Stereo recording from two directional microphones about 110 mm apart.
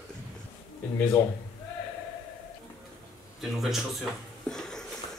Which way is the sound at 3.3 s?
Centre (ahead or behind).